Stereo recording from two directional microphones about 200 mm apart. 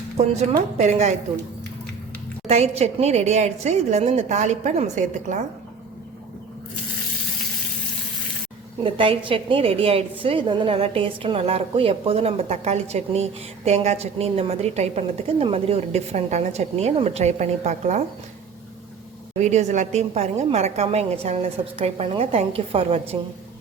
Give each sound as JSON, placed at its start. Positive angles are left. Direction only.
{"t": 0.8, "sound": "a woman's voice", "side_deg": -35}
{"t": 2.5, "sound": "a woman's voice", "side_deg": -35}
{"t": 8.8, "sound": "a woman's voice", "side_deg": -25}
{"t": 19.4, "sound": "a woman's voice", "side_deg": -35}